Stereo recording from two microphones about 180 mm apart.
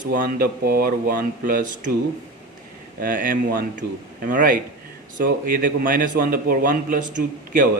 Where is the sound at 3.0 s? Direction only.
50° right (ahead or behind).